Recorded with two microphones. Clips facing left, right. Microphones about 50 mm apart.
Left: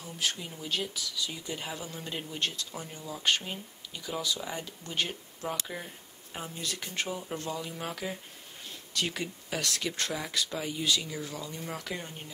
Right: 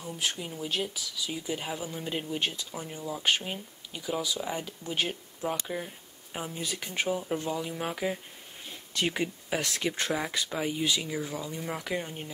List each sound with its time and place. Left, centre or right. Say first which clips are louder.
0.0 s speech: right 1 dB; centre